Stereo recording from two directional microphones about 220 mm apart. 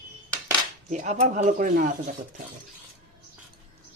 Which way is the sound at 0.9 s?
30° right (ahead or behind).